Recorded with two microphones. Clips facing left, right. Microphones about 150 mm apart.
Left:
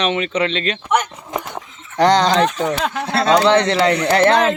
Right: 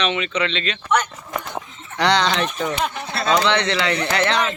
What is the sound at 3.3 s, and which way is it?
Speech, 40° left (ahead or behind).